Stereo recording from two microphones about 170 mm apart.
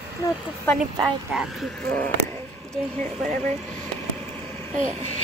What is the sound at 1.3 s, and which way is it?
Speech, 5° right (ahead or behind).